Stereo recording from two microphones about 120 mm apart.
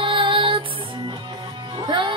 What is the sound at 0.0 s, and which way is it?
Music, 45° right (ahead or behind).